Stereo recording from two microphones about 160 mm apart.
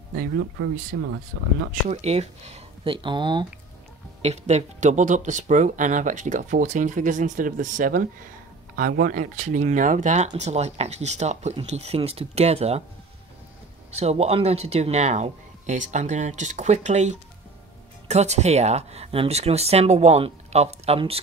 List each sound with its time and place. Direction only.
1.7 s speech: 45° right (ahead or behind)
4.2 s speech: 45° right (ahead or behind)
13.9 s speech: 40° right (ahead or behind)